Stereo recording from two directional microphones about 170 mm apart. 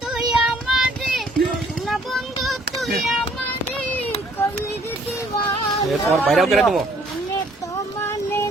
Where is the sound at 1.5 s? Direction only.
Centre (ahead or behind).